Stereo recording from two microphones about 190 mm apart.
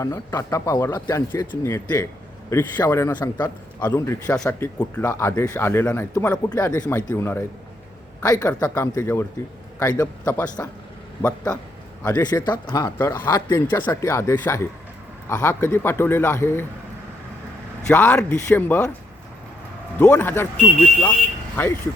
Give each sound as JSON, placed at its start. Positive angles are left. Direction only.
{"t": 0.0, "sound": "a man's voice", "side_deg": 15}
{"t": 12.0, "sound": "a man's voice", "side_deg": 20}
{"t": 17.8, "sound": "a man's voice", "side_deg": 10}
{"t": 20.0, "sound": "a man's voice", "side_deg": 10}
{"t": 21.5, "sound": "speech", "side_deg": 10}